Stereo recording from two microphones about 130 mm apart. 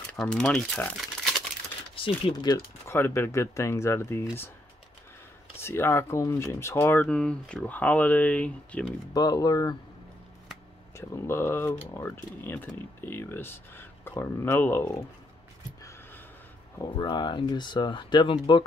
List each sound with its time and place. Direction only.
0.2 s speech: 5° left (ahead or behind)
0.9 s crumpling: 5° left (ahead or behind)
2.0 s speech: 40° left (ahead or behind)
2.5 s speech: 20° left (ahead or behind)
5.6 s speech: 20° left (ahead or behind)
9.1 s speech: 30° left (ahead or behind)
11.0 s speech: 20° left (ahead or behind)
16.9 s speech: 35° left (ahead or behind)